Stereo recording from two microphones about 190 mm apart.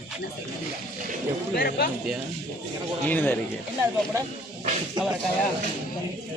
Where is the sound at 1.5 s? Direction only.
50° left (ahead or behind).